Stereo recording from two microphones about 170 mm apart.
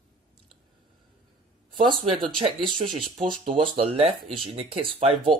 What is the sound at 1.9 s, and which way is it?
Speech, 30° right (ahead or behind).